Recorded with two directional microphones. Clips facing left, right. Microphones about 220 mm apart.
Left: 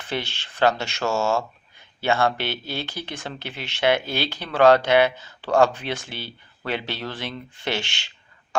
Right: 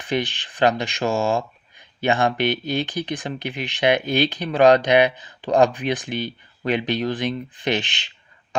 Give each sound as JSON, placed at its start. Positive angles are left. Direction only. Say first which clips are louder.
{"t": 0.0, "sound": "speech", "louder": "right 5 dB", "side_deg": -15}